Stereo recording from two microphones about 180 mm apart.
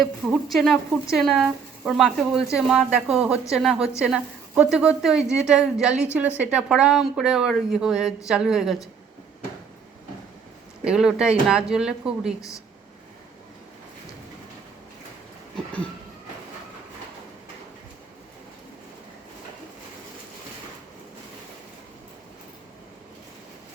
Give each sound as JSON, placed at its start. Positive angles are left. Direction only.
{"t": 0.0, "sound": "a woman's voice", "side_deg": 0}
{"t": 10.8, "sound": "a woman's voice", "side_deg": -5}
{"t": 12.4, "sound": "a woman's voice", "side_deg": 15}